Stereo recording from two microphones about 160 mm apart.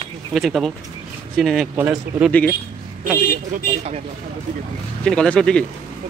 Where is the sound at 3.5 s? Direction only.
45° right (ahead or behind).